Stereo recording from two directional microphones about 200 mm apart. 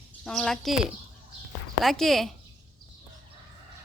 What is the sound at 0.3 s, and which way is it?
Speech, centre (ahead or behind).